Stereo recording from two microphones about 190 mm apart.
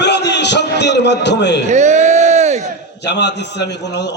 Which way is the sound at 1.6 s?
40° right (ahead or behind).